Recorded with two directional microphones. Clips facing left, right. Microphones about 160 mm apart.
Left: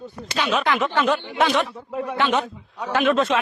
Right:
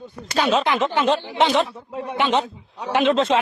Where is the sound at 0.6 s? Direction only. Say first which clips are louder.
Right 1 dB; 20° right (ahead or behind).